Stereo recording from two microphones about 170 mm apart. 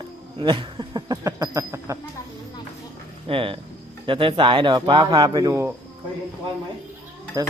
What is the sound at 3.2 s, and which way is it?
Speech, 30° right (ahead or behind).